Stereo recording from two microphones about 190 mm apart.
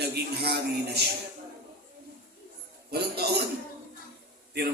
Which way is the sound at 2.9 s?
60° right (ahead or behind).